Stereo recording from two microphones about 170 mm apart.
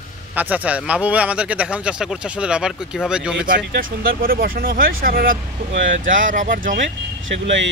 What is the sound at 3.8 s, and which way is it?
Speech, 55° right (ahead or behind).